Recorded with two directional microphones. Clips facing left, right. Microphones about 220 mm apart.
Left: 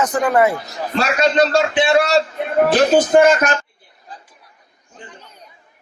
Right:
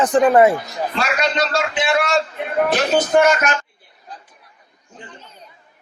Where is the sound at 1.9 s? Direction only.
35° left (ahead or behind).